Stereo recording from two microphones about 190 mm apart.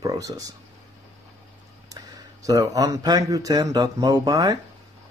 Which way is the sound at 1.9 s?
20° right (ahead or behind).